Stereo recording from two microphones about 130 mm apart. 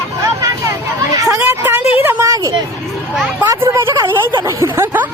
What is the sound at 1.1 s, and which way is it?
A woman's voice, 25° right (ahead or behind).